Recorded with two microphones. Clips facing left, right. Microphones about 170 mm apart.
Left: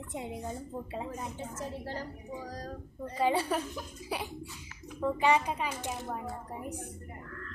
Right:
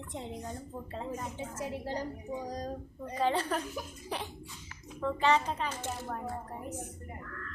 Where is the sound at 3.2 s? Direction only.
10° left (ahead or behind).